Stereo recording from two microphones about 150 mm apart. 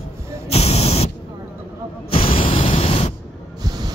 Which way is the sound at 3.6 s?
25° right (ahead or behind).